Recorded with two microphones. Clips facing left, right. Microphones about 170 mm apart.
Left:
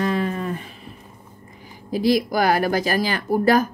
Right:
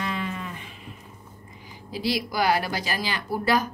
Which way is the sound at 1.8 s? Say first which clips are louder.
Left 8 dB; 45° left (ahead or behind).